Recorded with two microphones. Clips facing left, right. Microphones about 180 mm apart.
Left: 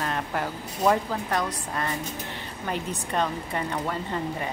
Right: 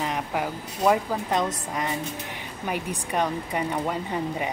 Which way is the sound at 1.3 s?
20° right (ahead or behind).